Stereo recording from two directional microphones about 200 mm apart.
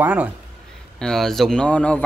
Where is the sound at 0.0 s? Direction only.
5° right (ahead or behind).